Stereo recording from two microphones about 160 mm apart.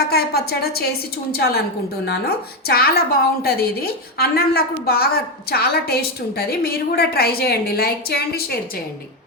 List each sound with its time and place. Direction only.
0.1 s a woman's voice: 80° left